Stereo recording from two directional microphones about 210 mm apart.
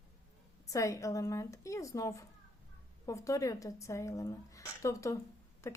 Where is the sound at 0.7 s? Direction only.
15° left (ahead or behind).